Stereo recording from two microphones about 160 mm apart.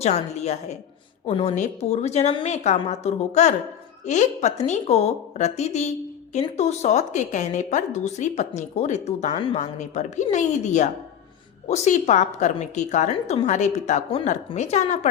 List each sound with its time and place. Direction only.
0.0 s a woman's voice: 45° left (ahead or behind)
1.5 s a woman's voice: 45° left (ahead or behind)